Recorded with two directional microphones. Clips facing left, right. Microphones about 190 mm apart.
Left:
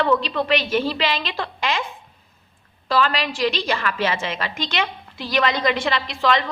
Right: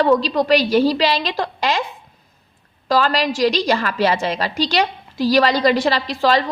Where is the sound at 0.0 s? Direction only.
40° right (ahead or behind).